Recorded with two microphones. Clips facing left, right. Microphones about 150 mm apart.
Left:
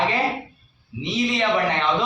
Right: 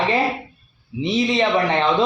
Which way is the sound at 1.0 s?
30° right (ahead or behind).